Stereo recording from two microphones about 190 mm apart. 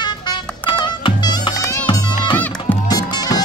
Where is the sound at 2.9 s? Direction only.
20° left (ahead or behind).